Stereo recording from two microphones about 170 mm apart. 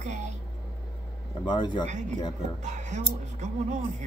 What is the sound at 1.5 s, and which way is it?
Speech, 25° left (ahead or behind).